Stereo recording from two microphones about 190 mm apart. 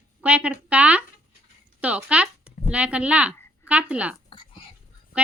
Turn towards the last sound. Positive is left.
turn(degrees=25)  # may be behind; listen again after turning